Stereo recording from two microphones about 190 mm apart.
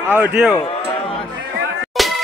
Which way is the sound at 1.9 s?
Centre (ahead or behind).